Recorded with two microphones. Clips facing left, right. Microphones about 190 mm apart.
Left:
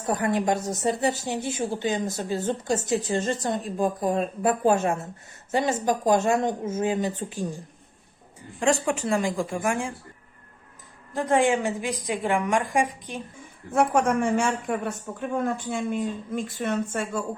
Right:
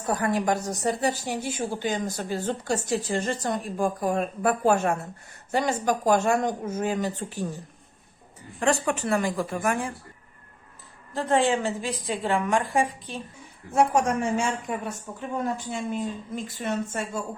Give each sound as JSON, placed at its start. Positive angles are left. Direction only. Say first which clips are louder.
{"t": 0.0, "sound": "speech", "louder": "left 1 dB", "side_deg": 20}
{"t": 8.8, "sound": "a woman's voice", "louder": "left 1 dB", "side_deg": 15}
{"t": 11.1, "sound": "a woman's voice", "louder": "left 1 dB", "side_deg": 15}
{"t": 13.7, "sound": "a woman's voice", "louder": "left 1 dB", "side_deg": 55}